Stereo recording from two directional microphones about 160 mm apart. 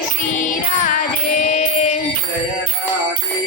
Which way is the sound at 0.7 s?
55° left (ahead or behind).